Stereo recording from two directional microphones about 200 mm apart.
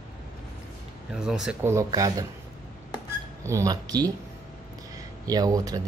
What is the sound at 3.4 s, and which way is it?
Speech, 15° right (ahead or behind).